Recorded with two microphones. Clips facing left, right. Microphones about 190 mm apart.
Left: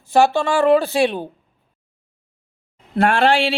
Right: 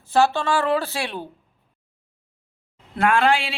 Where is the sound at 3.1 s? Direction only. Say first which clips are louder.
Left 3 dB; 70° left (ahead or behind).